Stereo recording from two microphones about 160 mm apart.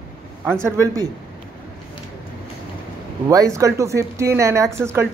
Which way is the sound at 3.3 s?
20° right (ahead or behind).